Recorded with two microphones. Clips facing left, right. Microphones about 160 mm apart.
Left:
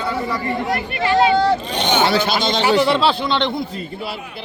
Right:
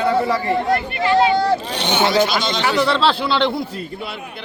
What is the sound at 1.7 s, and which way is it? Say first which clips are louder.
A man's voice: left 1 dB; 20° left (ahead or behind).